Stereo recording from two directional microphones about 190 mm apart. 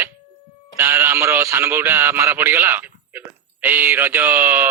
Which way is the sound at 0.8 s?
10° right (ahead or behind).